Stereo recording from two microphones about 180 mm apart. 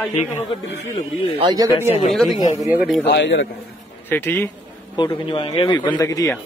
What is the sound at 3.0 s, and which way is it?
Speech, 75° left (ahead or behind).